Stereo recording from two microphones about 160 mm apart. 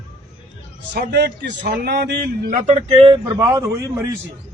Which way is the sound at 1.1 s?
90° right.